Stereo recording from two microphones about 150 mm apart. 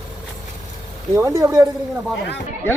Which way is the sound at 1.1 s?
20° right (ahead or behind).